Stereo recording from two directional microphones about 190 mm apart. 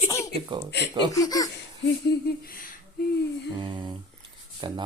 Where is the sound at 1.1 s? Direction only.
20° left (ahead or behind).